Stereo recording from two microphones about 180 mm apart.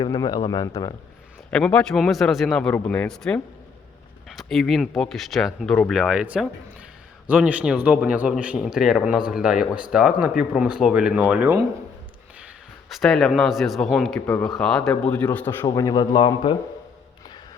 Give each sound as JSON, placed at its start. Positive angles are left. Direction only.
{"t": 0.0, "sound": "speech", "side_deg": 20}
{"t": 1.5, "sound": "a man's voice", "side_deg": 5}
{"t": 6.0, "sound": "a man's voice", "side_deg": -5}
{"t": 12.9, "sound": "a man's voice", "side_deg": 0}
{"t": 15.6, "sound": "speech", "side_deg": 20}